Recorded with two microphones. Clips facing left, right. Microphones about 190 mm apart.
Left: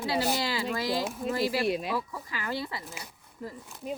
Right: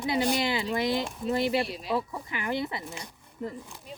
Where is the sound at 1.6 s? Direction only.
55° left (ahead or behind).